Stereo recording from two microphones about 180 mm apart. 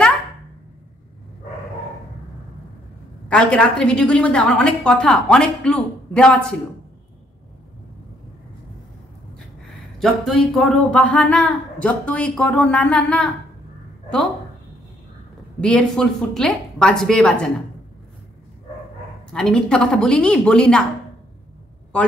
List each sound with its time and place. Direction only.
3.3 s a woman's voice: 5° left (ahead or behind)
9.7 s speech: centre (ahead or behind)
15.6 s a woman's voice: 5° left (ahead or behind)
19.3 s a woman's voice: 5° left (ahead or behind)